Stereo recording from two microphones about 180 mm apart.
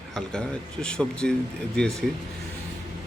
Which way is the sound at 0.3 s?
5° left (ahead or behind).